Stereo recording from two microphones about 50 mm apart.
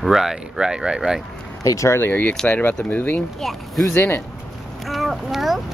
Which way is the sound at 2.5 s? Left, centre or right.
Left.